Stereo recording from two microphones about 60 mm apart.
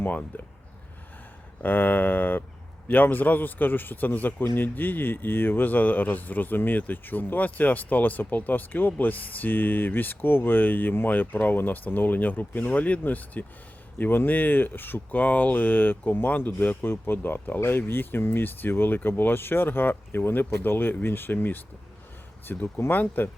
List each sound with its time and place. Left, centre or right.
0.0 s speech: left
1.6 s speech: left